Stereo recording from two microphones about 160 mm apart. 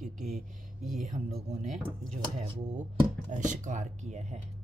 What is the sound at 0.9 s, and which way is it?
Speech, 50° right (ahead or behind).